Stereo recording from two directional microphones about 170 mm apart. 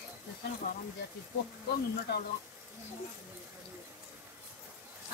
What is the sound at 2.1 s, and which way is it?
Speech, 80° left.